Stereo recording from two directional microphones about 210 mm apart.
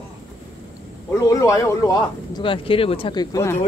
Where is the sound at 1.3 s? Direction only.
15° left (ahead or behind).